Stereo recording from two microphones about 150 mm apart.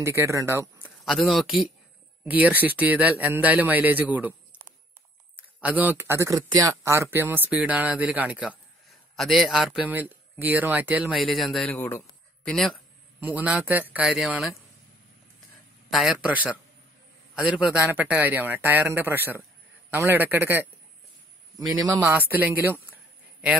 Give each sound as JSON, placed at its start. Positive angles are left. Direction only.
{"t": 0.0, "sound": "speech", "side_deg": -20}
{"t": 1.0, "sound": "speech", "side_deg": 0}
{"t": 13.2, "sound": "speech", "side_deg": -10}
{"t": 15.9, "sound": "speech", "side_deg": -5}
{"t": 21.5, "sound": "a man's voice", "side_deg": -25}
{"t": 22.0, "sound": "speech", "side_deg": -15}